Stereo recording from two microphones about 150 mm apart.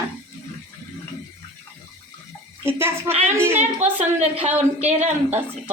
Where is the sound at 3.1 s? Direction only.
40° right (ahead or behind).